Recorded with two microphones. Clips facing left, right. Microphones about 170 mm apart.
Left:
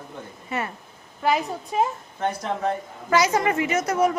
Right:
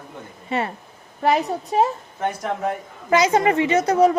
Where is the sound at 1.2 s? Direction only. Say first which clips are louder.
Right 4 dB; 35° right (ahead or behind).